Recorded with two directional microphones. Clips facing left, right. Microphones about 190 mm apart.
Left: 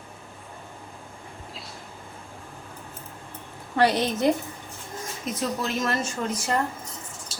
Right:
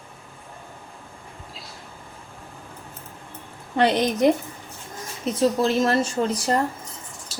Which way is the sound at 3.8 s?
20° right (ahead or behind).